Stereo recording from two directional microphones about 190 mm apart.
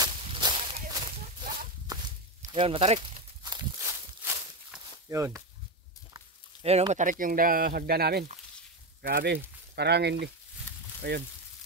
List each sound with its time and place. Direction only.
0.0 s whip: 25° right (ahead or behind)
1.2 s a sound: 45° right (ahead or behind)
2.5 s speech: 25° right (ahead or behind)
3.4 s walk: 15° right (ahead or behind)
6.6 s speech: 35° right (ahead or behind); by 11.2 s 60° right (ahead or behind)